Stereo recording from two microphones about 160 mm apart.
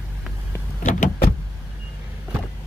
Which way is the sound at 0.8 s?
50° left (ahead or behind).